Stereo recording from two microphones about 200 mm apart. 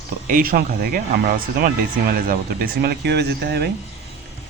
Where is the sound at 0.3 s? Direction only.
45° right (ahead or behind).